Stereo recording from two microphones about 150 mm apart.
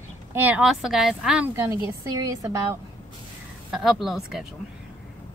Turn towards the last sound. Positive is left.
turn(degrees=-5)  # may be behind; listen again after turning